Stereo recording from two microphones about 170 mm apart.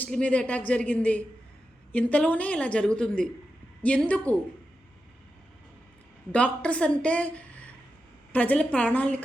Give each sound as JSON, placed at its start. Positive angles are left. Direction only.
{"t": 0.0, "sound": "a woman's voice", "side_deg": 10}
{"t": 6.3, "sound": "a woman's voice", "side_deg": 10}